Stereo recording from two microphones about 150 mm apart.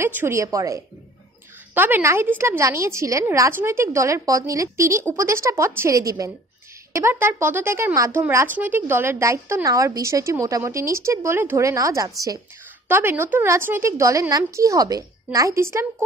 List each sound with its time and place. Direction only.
0.0 s a woman's voice: 15° right (ahead or behind)